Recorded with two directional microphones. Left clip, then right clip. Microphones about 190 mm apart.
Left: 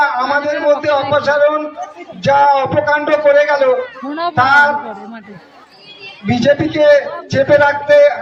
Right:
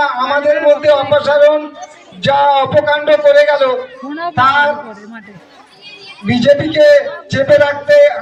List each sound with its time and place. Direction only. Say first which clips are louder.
0.3 s a man's voice: right 4 dB; centre (ahead or behind)
0.7 s a man's voice: right 1 dB; 20° right (ahead or behind)
4.1 s speech: left 2 dB; 5° left (ahead or behind)
4.4 s a man's voice: left 1 dB; 20° right (ahead or behind)
6.2 s a man's voice: right 2 dB; 20° right (ahead or behind)